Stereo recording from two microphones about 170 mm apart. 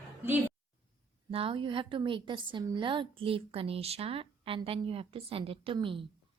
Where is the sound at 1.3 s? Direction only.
30° right (ahead or behind).